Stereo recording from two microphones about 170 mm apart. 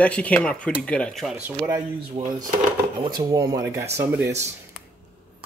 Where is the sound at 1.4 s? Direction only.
15° right (ahead or behind).